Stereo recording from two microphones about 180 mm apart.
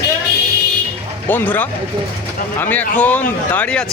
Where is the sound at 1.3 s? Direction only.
10° left (ahead or behind).